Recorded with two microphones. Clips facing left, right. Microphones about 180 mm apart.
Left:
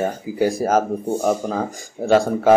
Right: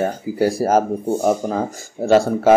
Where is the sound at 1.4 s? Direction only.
15° right (ahead or behind).